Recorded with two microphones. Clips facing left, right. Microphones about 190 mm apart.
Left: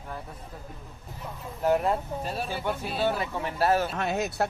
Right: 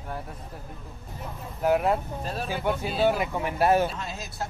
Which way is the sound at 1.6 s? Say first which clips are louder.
Right 1 dB; 5° right (ahead or behind).